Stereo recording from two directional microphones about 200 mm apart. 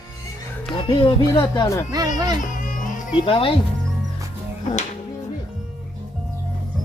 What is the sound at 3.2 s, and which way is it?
Speech, 25° left (ahead or behind).